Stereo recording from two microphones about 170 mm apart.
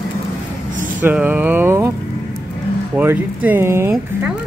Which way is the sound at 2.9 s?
10° right (ahead or behind).